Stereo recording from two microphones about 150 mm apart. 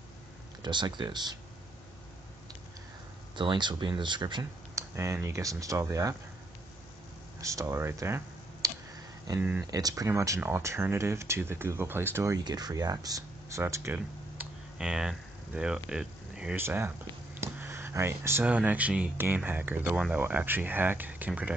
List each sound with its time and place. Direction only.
0.6 s speech: 30° right (ahead or behind)
3.3 s speech: 30° right (ahead or behind)
7.4 s speech: 20° right (ahead or behind)
8.6 s clicking: 20° right (ahead or behind)
9.4 s speech: 10° right (ahead or behind)
9.7 s speech: 25° right (ahead or behind); by 16.5 s 5° right (ahead or behind)
16.5 s speech: 15° right (ahead or behind)